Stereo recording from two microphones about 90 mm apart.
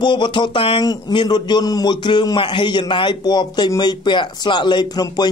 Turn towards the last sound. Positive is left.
turn(degrees=50)  # may be behind; listen again after turning